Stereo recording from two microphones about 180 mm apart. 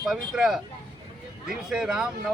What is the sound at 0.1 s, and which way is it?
Speech, 5° right (ahead or behind).